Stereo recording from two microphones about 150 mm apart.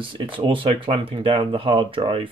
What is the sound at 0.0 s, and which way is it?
Speech, 35° right (ahead or behind).